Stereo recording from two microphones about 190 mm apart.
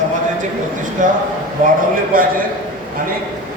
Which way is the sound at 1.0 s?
45° right (ahead or behind).